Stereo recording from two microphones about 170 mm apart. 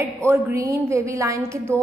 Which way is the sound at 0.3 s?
15° right (ahead or behind).